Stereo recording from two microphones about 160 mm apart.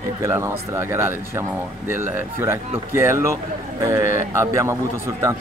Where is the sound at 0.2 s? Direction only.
15° right (ahead or behind).